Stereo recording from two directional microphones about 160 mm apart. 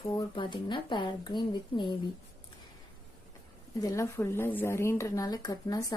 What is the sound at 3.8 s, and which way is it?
Speech, 20° left (ahead or behind).